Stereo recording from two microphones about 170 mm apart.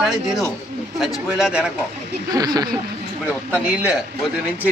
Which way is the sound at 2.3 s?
20° right (ahead or behind).